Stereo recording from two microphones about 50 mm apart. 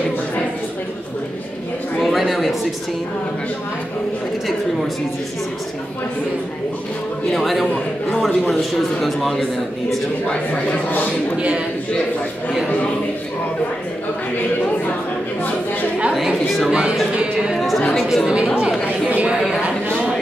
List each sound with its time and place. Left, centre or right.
2.0 s a sound: centre
7.3 s a man's voice: centre
9.0 s a man's voice: centre
10.3 s speech: left
11.3 s speech: right
16.4 s a sound: centre
17.6 s chatter: centre
18.0 s speech: centre
19.0 s a sound: right